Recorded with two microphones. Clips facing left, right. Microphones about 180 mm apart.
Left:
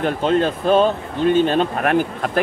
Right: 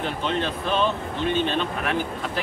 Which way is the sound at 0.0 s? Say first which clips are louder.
Left 8 dB; 45° left (ahead or behind).